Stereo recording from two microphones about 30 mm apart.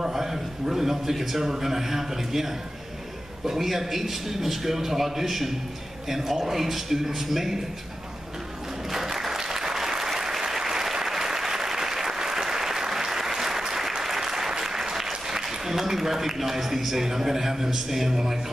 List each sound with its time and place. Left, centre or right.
0.0 s a man's voice: centre
8.9 s applause: centre
15.2 s a man's voice: centre